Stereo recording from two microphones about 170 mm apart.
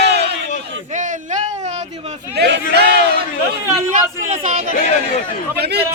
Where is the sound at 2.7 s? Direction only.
70° right (ahead or behind).